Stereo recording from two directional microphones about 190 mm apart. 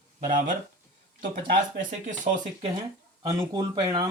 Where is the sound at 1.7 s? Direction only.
45° right (ahead or behind).